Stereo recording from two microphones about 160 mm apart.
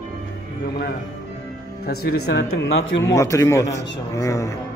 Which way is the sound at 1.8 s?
80° left.